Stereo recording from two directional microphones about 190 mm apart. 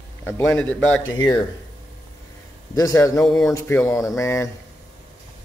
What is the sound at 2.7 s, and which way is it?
Speech, 15° left (ahead or behind).